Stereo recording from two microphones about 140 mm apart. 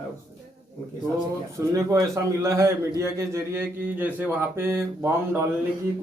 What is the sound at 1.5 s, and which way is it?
A man's voice, 25° right (ahead or behind).